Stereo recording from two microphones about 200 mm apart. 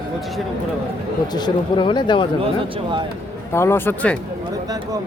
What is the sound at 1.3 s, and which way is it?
Speech, 20° left (ahead or behind).